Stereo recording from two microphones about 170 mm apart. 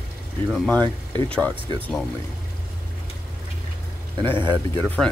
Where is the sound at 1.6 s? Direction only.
30° right (ahead or behind).